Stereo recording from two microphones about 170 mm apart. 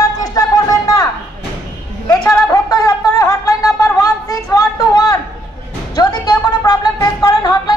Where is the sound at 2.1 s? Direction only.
20° left (ahead or behind).